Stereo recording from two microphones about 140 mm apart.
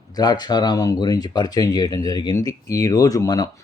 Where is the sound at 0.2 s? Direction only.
30° left (ahead or behind).